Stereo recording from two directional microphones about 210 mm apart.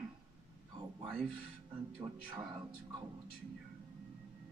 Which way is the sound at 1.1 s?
5° right (ahead or behind).